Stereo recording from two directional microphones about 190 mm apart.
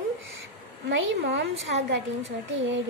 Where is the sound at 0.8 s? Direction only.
70° right (ahead or behind).